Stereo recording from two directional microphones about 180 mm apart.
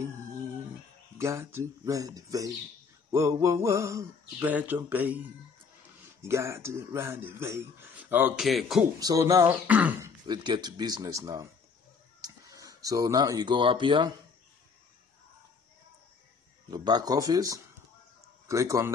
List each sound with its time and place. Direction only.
1.1 s speech: 15° right (ahead or behind)
6.2 s speech: 15° right (ahead or behind)
8.5 s speech: centre (ahead or behind)
9.0 s speech: 20° right (ahead or behind)
16.7 s speech: 20° right (ahead or behind)